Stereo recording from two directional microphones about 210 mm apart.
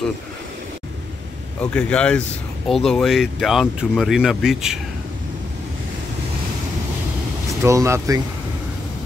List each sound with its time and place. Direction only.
1.6 s speech: 5° left (ahead or behind)
7.6 s speech: 15° right (ahead or behind)